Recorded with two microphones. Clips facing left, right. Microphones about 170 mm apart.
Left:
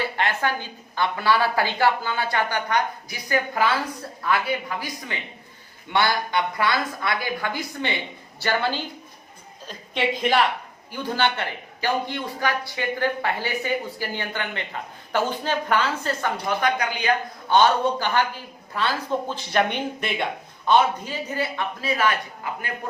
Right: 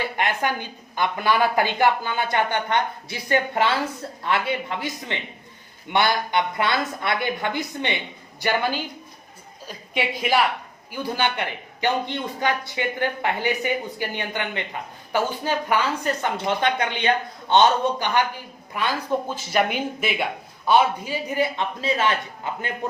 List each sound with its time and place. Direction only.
0.2 s a man's voice: 15° right (ahead or behind)